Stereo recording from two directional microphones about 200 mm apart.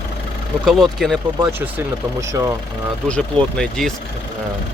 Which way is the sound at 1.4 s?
10° right (ahead or behind).